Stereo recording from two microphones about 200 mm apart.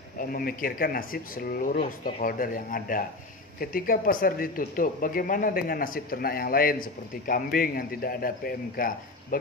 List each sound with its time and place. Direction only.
0.2 s speech: 45° left (ahead or behind)